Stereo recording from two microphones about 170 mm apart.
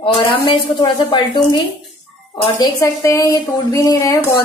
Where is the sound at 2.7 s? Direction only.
20° left (ahead or behind).